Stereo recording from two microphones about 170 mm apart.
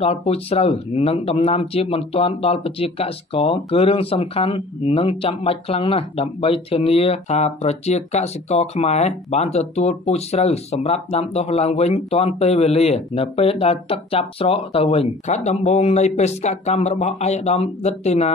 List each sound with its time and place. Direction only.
0.0 s speech: 35° left (ahead or behind)